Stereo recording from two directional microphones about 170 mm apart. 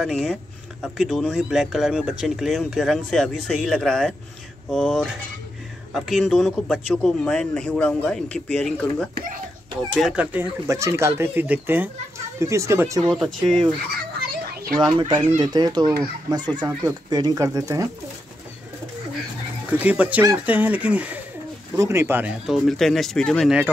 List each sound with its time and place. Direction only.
0.0 s speech: centre (ahead or behind); by 13.0 s 15° right (ahead or behind)
13.1 s speech: centre (ahead or behind)
14.8 s speech: 25° right (ahead or behind)
19.8 s speech: 10° right (ahead or behind)
22.5 s speech: centre (ahead or behind)